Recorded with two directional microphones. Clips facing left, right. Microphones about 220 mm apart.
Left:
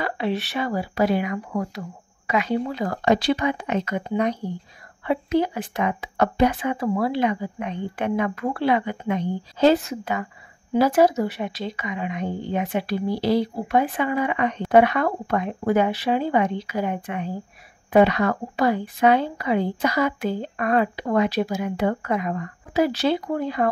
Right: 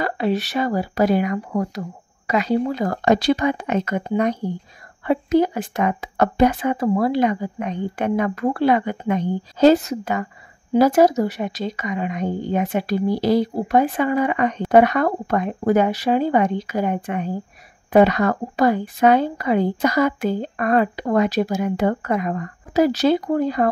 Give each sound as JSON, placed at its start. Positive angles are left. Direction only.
{"t": 0.0, "sound": "speech", "side_deg": -40}